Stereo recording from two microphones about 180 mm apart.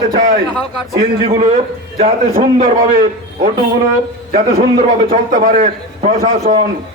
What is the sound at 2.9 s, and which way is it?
A man's voice, 45° right (ahead or behind).